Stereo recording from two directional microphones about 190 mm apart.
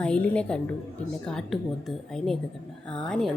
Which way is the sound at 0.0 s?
5° left (ahead or behind).